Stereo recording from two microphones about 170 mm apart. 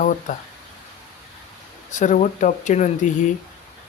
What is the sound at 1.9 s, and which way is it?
Speech, 45° left (ahead or behind).